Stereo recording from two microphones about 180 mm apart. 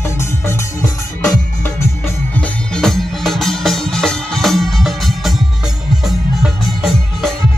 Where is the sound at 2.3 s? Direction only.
5° left (ahead or behind).